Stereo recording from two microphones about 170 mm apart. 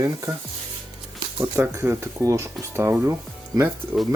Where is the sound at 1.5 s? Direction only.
15° right (ahead or behind).